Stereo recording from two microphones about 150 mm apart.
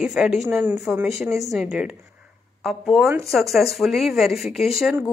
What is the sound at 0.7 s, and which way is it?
Speech, 5° right (ahead or behind).